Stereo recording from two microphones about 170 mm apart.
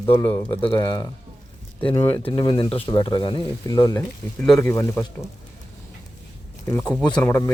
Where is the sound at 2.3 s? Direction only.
25° left (ahead or behind).